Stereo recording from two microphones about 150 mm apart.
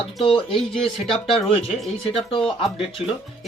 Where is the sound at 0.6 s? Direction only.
5° left (ahead or behind).